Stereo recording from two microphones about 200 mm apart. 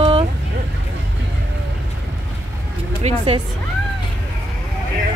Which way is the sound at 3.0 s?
35° right (ahead or behind).